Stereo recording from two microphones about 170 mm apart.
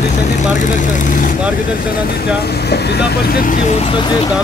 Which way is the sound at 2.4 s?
70° left (ahead or behind).